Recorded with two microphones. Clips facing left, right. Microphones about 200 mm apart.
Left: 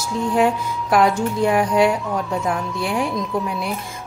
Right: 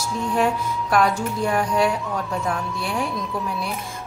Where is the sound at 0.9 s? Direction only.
20° left (ahead or behind).